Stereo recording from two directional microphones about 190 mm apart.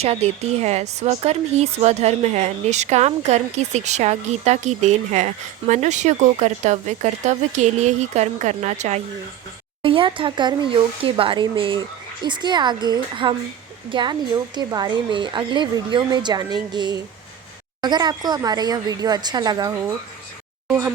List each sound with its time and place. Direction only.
0.0 s speech: 35° right (ahead or behind); by 20.9 s 15° right (ahead or behind)